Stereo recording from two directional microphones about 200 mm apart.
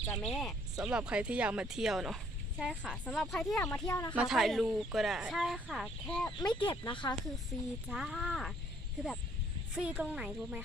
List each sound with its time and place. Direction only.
0.1 s speech: centre (ahead or behind)
3.6 s speech: 10° left (ahead or behind)
4.1 s speech: 5° right (ahead or behind)
6.4 s speech: 25° left (ahead or behind)
7.9 s speech: centre (ahead or behind)
9.7 s speech: 5° right (ahead or behind)